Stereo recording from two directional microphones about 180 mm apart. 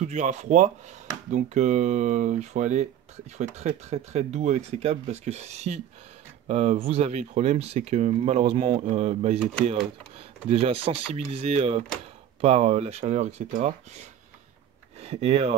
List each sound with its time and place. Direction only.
0.0 s speech: 40° right (ahead or behind)
10.5 s speech: 35° right (ahead or behind)